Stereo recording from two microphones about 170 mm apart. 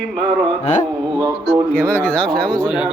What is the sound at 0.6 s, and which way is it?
Carnatic music, 45° left (ahead or behind).